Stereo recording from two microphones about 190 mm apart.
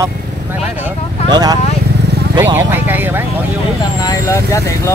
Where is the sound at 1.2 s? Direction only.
20° right (ahead or behind).